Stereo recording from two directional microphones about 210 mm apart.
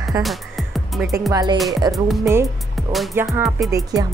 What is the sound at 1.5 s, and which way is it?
Music, centre (ahead or behind).